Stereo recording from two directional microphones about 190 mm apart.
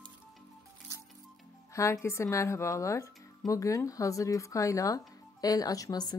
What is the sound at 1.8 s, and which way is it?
Speech, 15° left (ahead or behind).